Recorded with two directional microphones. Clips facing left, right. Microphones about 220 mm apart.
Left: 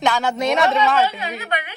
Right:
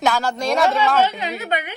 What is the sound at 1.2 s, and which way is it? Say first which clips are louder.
Speech: right 2 dB; 20° right (ahead or behind).